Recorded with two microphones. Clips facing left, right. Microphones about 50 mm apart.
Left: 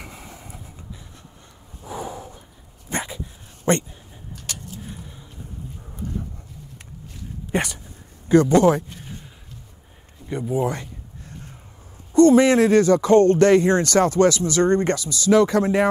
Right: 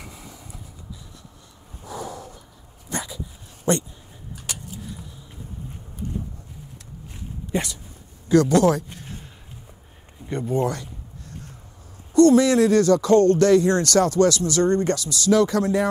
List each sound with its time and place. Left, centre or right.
0.0 s vehicle: left
1.9 s a sound: left
2.9 s dog: left
3.7 s speech: left
4.5 s a sound: centre
7.5 s speech: left
8.3 s speech: left
10.3 s speech: centre
12.1 s speech: left